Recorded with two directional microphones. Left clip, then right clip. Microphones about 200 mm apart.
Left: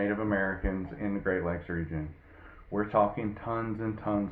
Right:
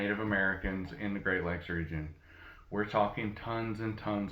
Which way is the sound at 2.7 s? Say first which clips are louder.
Left 4 dB; 35° right (ahead or behind).